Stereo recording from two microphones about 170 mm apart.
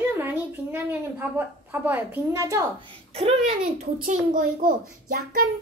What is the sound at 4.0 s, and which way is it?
Speech, 50° right (ahead or behind).